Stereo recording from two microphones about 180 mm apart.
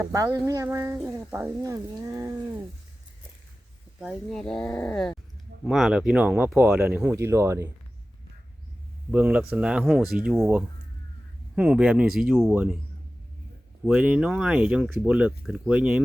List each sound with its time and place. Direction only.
0.0 s speech: 15° right (ahead or behind)
4.0 s speech: centre (ahead or behind); by 7.7 s 15° right (ahead or behind)
9.1 s speech: 10° right (ahead or behind)
13.8 s speech: 5° right (ahead or behind)